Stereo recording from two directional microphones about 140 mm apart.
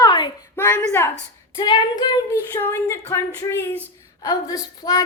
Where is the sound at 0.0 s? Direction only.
30° left (ahead or behind).